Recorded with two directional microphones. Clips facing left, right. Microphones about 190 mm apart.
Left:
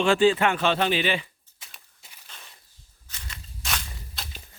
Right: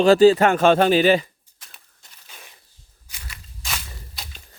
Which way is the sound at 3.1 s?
5° right (ahead or behind).